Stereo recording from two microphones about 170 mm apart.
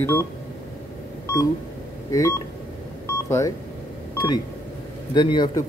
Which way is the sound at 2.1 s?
20° left (ahead or behind).